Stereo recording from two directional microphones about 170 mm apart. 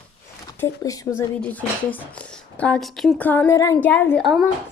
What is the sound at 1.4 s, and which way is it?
Speech, 10° left (ahead or behind).